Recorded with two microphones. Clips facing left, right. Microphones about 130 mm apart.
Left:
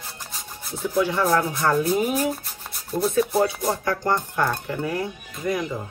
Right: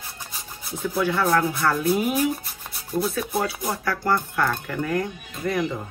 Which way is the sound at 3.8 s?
25° left (ahead or behind).